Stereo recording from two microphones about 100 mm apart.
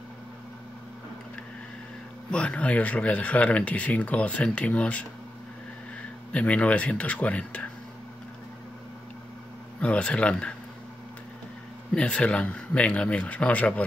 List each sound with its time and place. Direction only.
2.3 s speech: 10° left (ahead or behind)
6.3 s speech: 15° left (ahead or behind)
9.8 s speech: 10° left (ahead or behind)
11.9 s speech: 10° left (ahead or behind)